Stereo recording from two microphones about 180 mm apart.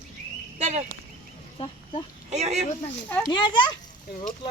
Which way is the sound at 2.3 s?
40° right (ahead or behind).